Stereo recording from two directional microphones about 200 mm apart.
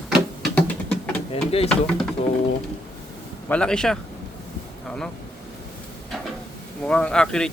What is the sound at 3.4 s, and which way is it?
Speech, 5° left (ahead or behind).